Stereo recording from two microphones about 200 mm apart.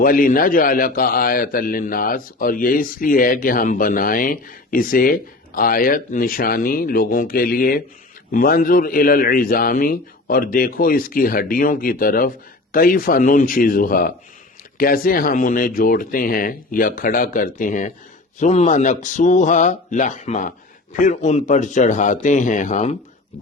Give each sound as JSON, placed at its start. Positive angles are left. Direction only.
{"t": 0.0, "sound": "a man's voice", "side_deg": 45}